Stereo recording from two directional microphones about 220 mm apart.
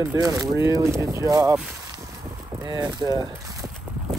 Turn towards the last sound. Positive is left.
turn(degrees=-20)  # may be behind; listen again after turning